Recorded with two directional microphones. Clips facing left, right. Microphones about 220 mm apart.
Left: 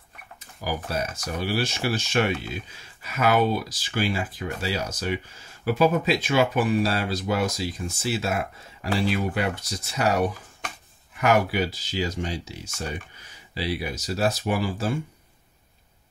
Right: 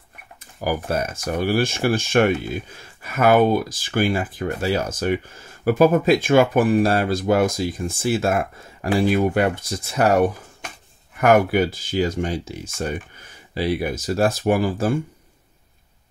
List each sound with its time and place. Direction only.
0.6 s speech: 50° right (ahead or behind)